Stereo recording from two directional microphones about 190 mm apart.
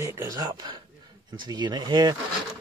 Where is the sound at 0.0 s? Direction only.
15° right (ahead or behind).